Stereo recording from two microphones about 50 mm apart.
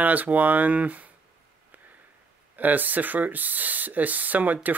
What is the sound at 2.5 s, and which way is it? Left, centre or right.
Speech, right.